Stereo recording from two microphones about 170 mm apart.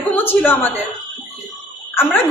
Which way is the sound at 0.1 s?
10° left (ahead or behind).